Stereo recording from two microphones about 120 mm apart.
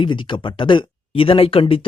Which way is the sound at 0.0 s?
40° left (ahead or behind).